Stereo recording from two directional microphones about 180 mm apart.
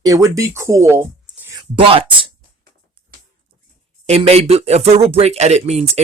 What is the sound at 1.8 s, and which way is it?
Speech, 30° right (ahead or behind).